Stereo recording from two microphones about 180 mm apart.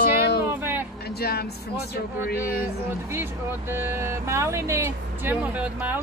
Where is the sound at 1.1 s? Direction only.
60° left (ahead or behind).